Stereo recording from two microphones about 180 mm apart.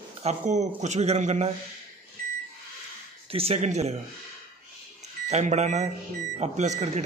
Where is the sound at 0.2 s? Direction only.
40° right (ahead or behind).